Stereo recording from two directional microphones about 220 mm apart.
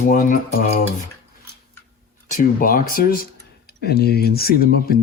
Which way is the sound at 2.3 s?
40° left (ahead or behind).